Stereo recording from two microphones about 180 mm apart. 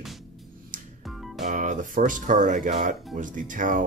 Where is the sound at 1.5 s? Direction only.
45° right (ahead or behind).